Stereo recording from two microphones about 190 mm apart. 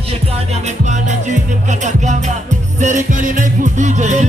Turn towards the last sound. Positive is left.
turn(degrees=-40)  # may be behind; listen again after turning